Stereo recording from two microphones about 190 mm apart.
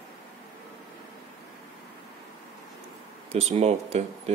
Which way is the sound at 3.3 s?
35° right (ahead or behind).